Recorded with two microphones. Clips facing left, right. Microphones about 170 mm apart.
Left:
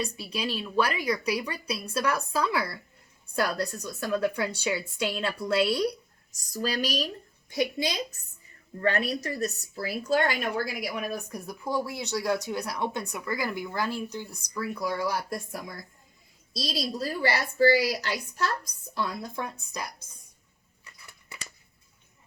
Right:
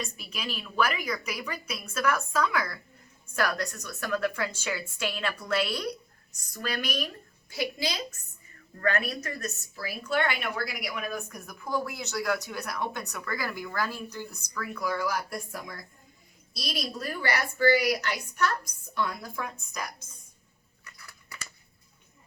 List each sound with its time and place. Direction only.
0.0 s a woman's voice: 30° left (ahead or behind)
4.6 s a woman's voice: 15° left (ahead or behind)
5.6 s speech: 30° left (ahead or behind)
8.8 s a woman's voice: 35° left (ahead or behind)
14.3 s a woman's voice: 30° left (ahead or behind)
20.8 s a sound: 25° left (ahead or behind)